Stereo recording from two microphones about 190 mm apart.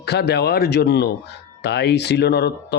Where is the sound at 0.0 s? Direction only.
60° left (ahead or behind).